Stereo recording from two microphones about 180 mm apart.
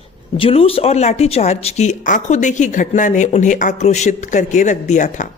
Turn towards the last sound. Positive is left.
turn(degrees=40)  # may be behind; listen again after turning